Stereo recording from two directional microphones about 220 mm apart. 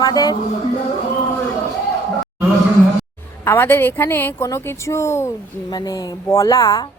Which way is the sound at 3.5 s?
10° left (ahead or behind).